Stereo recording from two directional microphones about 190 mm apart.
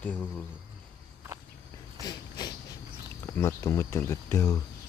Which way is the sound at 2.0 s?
20° left (ahead or behind).